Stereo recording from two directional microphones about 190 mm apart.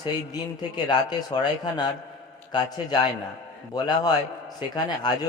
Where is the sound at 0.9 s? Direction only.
20° left (ahead or behind).